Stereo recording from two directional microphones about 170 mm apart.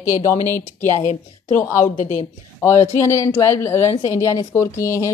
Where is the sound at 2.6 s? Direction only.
15° left (ahead or behind).